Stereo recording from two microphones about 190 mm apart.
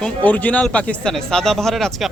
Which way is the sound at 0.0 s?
10° left (ahead or behind).